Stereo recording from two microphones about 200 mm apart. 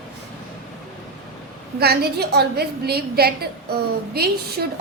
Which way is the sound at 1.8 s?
50° right (ahead or behind).